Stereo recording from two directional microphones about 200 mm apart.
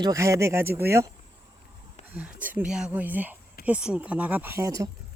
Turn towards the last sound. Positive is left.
turn(degrees=-15)  # may be behind; listen again after turning